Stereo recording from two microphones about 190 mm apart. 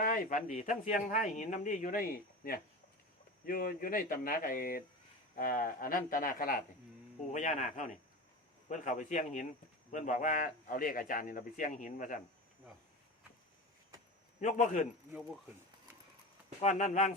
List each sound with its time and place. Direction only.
0.0 s a man's voice: 45° left (ahead or behind)
14.4 s a man's voice: 40° left (ahead or behind)
16.6 s a man's voice: 35° left (ahead or behind)